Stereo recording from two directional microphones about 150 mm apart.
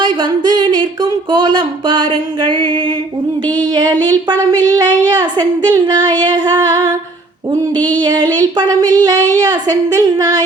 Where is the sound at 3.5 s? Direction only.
10° left (ahead or behind).